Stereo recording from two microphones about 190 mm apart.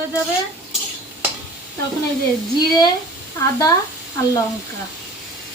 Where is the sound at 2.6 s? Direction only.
20° left (ahead or behind).